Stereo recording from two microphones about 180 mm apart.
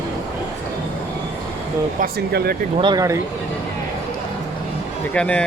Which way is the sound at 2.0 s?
60° right (ahead or behind).